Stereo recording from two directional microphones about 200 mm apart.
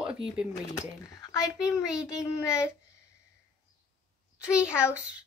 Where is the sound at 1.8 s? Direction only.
5° right (ahead or behind).